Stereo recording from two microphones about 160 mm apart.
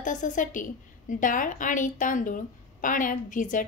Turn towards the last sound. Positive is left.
turn(degrees=55)  # may be behind; listen again after turning